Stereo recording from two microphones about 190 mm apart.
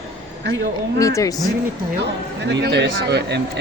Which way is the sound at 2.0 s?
65° right (ahead or behind).